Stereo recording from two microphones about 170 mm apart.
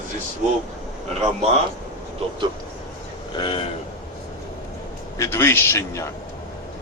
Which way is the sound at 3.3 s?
30° left (ahead or behind).